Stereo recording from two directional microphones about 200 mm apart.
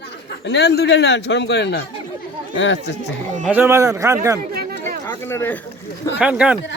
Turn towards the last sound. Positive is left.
turn(degrees=-5)  # may be behind; listen again after turning